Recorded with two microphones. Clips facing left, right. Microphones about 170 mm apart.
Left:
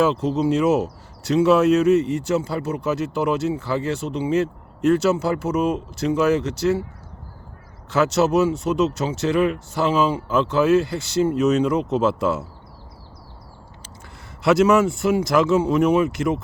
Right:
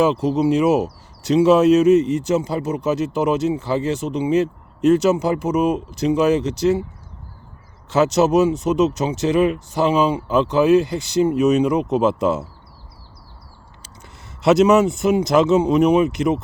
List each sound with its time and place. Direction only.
0.0 s speech: 15° right (ahead or behind)
7.9 s speech: 20° right (ahead or behind)
14.4 s speech: 20° right (ahead or behind)